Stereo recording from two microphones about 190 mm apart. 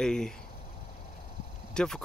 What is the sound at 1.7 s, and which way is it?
Speech, 5° left (ahead or behind).